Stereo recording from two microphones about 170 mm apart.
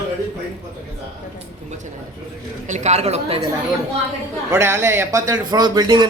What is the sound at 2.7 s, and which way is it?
Speech, 40° right (ahead or behind).